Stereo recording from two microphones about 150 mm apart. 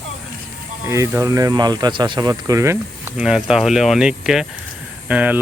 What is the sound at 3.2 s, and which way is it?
Speech, 5° right (ahead or behind).